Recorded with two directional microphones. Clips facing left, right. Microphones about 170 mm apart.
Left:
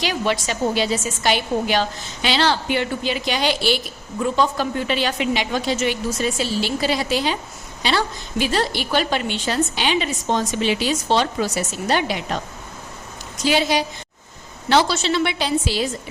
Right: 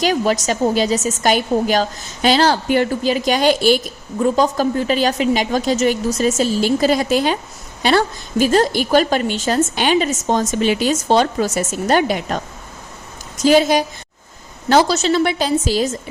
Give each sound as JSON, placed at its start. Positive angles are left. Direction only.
{"t": 0.0, "sound": "a woman's voice", "side_deg": -40}